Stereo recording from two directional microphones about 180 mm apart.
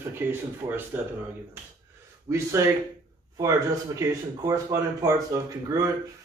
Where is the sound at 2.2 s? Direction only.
15° right (ahead or behind).